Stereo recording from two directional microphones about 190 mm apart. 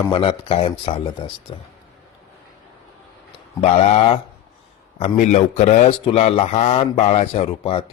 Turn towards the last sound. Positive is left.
turn(degrees=30)  # may be behind; listen again after turning